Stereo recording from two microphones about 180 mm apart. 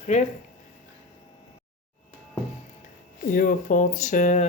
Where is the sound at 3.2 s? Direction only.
50° left (ahead or behind).